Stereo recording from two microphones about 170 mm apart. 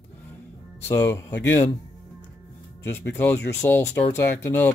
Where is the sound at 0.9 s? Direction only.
10° left (ahead or behind).